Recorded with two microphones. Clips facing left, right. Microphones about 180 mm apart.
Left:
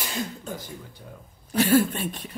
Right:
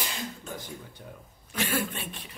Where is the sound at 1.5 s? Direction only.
40° left (ahead or behind).